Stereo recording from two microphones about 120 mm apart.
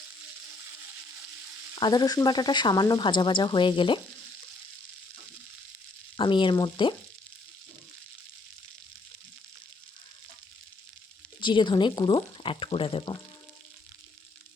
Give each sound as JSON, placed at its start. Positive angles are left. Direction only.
{"t": 1.7, "sound": "speech", "side_deg": 35}
{"t": 6.1, "sound": "speech", "side_deg": 45}
{"t": 11.3, "sound": "speech", "side_deg": 40}